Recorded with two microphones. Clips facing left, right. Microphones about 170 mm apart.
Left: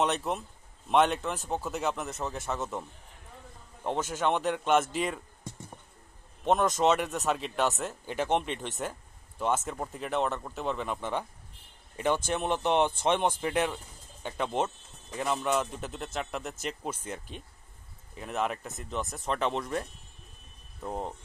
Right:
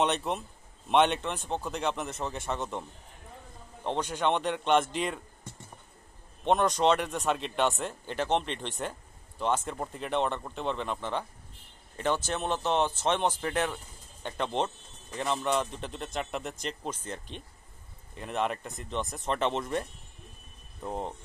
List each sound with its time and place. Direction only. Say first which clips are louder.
0.0 s speech: even; centre (ahead or behind)
3.8 s speech: even; 5° left (ahead or behind)
6.4 s speech: even; centre (ahead or behind)
12.3 s speech: left 2 dB; 10° left (ahead or behind)